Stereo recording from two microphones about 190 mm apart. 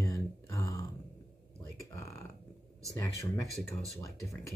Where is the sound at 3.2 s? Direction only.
15° left (ahead or behind).